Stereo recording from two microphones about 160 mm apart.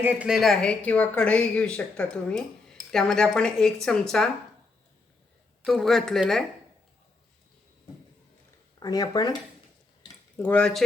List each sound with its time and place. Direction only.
0.0 s speech: 10° right (ahead or behind)
5.6 s speech: centre (ahead or behind)
8.8 s speech: 25° left (ahead or behind)
10.3 s speech: 10° left (ahead or behind)